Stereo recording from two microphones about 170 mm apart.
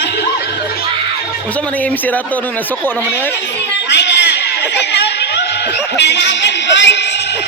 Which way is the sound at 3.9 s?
90° left.